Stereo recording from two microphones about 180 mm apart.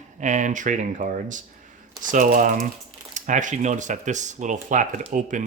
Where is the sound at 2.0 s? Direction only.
45° right (ahead or behind).